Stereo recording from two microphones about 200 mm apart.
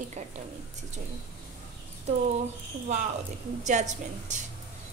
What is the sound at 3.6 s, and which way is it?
Speech, 35° right (ahead or behind).